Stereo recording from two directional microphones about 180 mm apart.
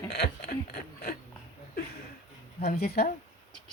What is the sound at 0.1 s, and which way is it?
Speech, 65° left (ahead or behind).